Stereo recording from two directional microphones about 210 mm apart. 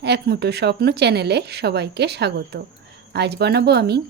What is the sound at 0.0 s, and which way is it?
Speech, 50° right (ahead or behind).